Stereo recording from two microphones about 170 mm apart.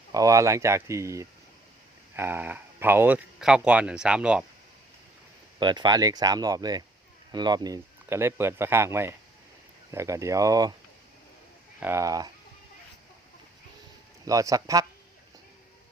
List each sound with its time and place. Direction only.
0.1 s speech: 20° right (ahead or behind)
5.5 s speech: 25° right (ahead or behind)
11.8 s speech: 15° right (ahead or behind)
14.3 s speech: 20° right (ahead or behind)